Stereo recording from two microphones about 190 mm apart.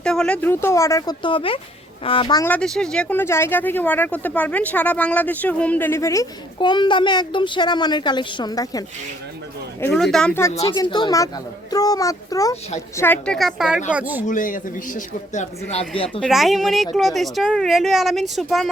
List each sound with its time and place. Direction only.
0.0 s speech: 5° left (ahead or behind); by 2.5 s 20° left (ahead or behind)
2.5 s speech: 5° left (ahead or behind); by 8.8 s 20° left (ahead or behind)
9.8 s speech: centre (ahead or behind)
10.6 s speech: 25° left (ahead or behind); by 13.8 s 5° right (ahead or behind)
14.3 s speech: 45° left (ahead or behind)
16.2 s speech: centre (ahead or behind)